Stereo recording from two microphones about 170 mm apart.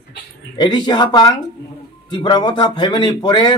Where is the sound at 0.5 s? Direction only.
25° left (ahead or behind).